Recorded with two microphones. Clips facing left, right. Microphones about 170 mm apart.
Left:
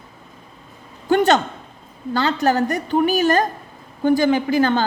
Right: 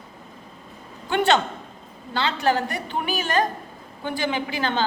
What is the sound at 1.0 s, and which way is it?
A woman's voice, 40° left (ahead or behind).